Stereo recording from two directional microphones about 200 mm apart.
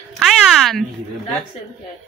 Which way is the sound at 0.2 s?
Centre (ahead or behind).